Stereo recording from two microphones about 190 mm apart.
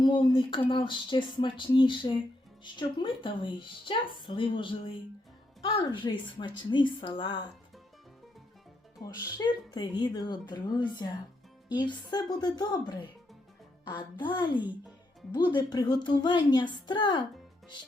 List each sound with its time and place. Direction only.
0.0 s a woman's voice: 25° left (ahead or behind)
9.0 s a woman's voice: 20° left (ahead or behind)